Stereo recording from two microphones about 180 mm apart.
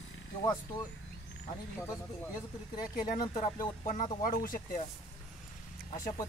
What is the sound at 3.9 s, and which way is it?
Speech, 45° left (ahead or behind).